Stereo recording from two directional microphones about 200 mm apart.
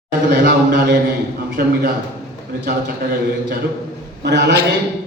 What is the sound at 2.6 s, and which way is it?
Speech, 45° right (ahead or behind).